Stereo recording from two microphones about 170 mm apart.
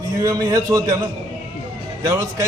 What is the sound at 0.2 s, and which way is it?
Speech, 20° right (ahead or behind).